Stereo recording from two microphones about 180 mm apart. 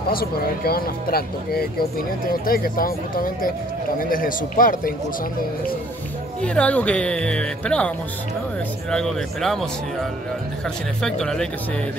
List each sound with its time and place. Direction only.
0.1 s speech: 55° left (ahead or behind)
6.4 s speech: 5° left (ahead or behind)
8.9 s speech: centre (ahead or behind)
11.0 s speech: 5° left (ahead or behind)